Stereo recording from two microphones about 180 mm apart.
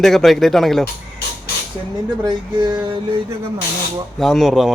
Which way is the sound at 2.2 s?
25° right (ahead or behind).